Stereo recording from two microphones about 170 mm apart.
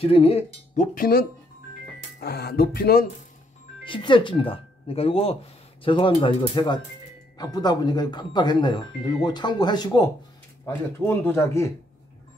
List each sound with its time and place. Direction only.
0.0 s speech: 35° left (ahead or behind)
0.9 s speech: 55° left (ahead or behind)
3.8 s speech: 30° left (ahead or behind)
10.6 s speech: 15° left (ahead or behind)